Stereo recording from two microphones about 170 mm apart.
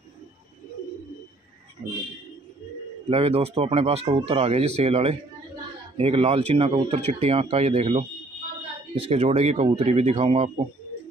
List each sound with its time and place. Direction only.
3.1 s speech: 35° right (ahead or behind)